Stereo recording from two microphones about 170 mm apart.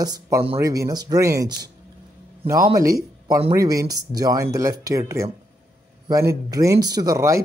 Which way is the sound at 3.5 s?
20° right (ahead or behind).